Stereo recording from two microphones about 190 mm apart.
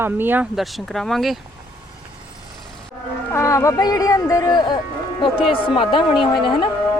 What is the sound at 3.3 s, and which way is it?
Speech, 15° left (ahead or behind).